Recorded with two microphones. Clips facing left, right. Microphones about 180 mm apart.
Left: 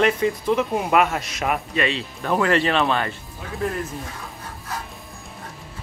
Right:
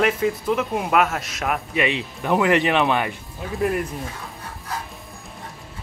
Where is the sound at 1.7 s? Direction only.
15° right (ahead or behind).